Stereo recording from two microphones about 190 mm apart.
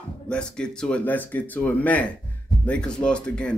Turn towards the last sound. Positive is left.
turn(degrees=5)  # may be behind; listen again after turning